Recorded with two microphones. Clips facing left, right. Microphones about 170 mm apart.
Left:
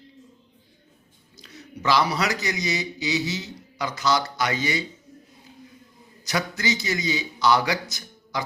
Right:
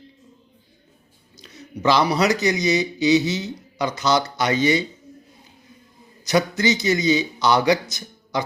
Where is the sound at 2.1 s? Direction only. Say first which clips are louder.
Right 7 dB; 20° right (ahead or behind).